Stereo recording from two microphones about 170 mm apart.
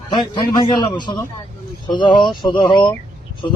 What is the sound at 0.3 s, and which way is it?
A man's voice, 25° left (ahead or behind).